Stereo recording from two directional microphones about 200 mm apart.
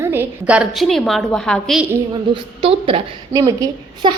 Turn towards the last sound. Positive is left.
turn(degrees=-20)  # may be behind; listen again after turning